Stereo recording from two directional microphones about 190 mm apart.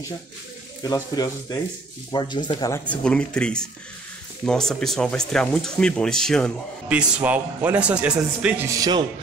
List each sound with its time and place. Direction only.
0.8 s speech: 20° left (ahead or behind)
2.8 s speech: 5° left (ahead or behind); by 9.0 s 20° right (ahead or behind)